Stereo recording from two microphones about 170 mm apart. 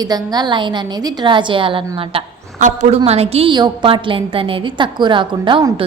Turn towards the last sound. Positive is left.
turn(degrees=-30)  # may be behind; listen again after turning